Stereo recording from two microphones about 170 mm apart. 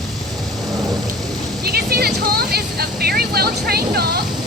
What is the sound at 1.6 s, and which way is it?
Vehicle, 65° right (ahead or behind).